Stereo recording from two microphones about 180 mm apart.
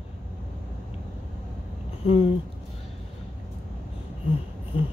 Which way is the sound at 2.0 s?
35° left (ahead or behind).